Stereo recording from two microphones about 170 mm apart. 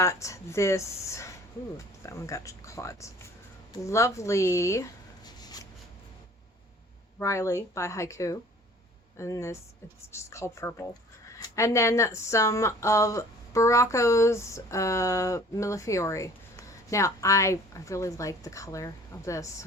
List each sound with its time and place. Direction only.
0.0 s speech: 15° left (ahead or behind)
7.2 s speech: 15° left (ahead or behind)